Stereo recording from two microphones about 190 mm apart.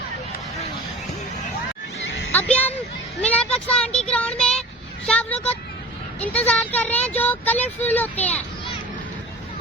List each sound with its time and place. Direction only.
2.3 s speech: 10° left (ahead or behind)